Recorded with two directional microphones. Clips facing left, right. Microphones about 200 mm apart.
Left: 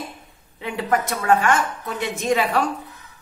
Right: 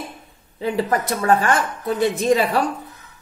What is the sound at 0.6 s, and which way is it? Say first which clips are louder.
Speech: right 2 dB; 35° right (ahead or behind).